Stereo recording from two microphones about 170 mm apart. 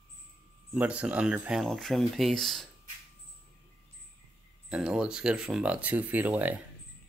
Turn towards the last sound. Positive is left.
turn(degrees=-10)  # may be behind; listen again after turning